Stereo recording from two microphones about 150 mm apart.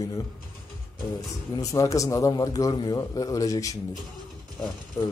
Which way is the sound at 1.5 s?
20° left (ahead or behind).